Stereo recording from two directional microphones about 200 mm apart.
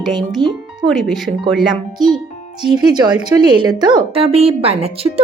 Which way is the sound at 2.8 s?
20° right (ahead or behind).